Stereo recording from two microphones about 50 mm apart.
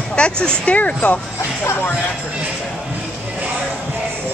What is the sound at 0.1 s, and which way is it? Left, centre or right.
Speech, centre.